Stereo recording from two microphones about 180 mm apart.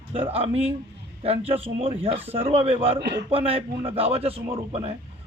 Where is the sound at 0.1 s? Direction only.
30° right (ahead or behind).